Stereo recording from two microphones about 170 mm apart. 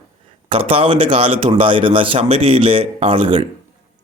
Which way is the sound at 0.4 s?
30° right (ahead or behind).